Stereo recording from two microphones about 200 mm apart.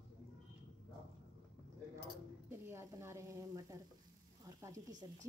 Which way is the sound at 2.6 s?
15° right (ahead or behind).